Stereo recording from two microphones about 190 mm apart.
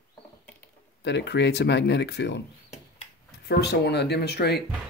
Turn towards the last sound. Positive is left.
turn(degrees=60)  # may be behind; listen again after turning